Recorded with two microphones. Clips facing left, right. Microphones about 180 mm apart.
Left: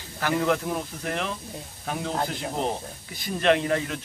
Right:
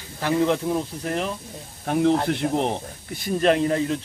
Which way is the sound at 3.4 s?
35° right (ahead or behind).